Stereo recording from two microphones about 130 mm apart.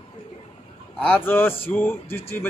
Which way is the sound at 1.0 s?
10° left (ahead or behind).